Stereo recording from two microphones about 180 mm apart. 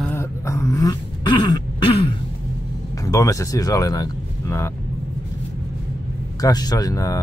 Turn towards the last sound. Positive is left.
turn(degrees=20)  # may be behind; listen again after turning